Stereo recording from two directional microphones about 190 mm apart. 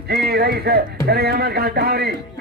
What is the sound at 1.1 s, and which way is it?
Speech, 55° right (ahead or behind).